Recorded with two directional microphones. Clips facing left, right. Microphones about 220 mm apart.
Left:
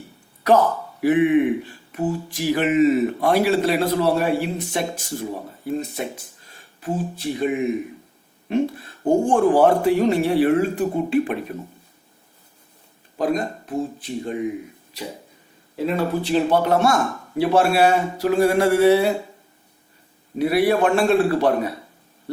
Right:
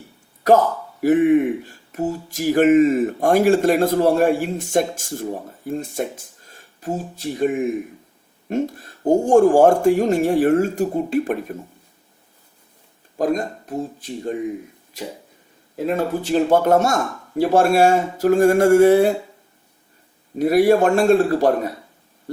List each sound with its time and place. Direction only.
1.0 s speech: 45° right (ahead or behind)
13.1 s speech: 45° right (ahead or behind)
20.4 s speech: 45° right (ahead or behind)